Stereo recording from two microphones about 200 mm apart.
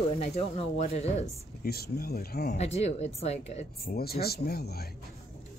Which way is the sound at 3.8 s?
50° left (ahead or behind).